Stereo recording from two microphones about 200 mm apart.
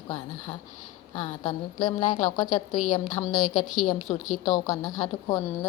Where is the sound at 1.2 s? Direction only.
20° left (ahead or behind).